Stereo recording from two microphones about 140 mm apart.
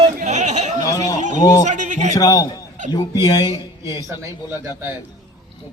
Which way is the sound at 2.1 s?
25° left (ahead or behind).